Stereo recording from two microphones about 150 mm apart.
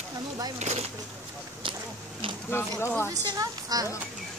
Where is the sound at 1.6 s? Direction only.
35° right (ahead or behind).